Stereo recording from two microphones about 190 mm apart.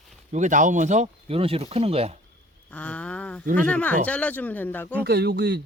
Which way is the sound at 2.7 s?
5° left (ahead or behind).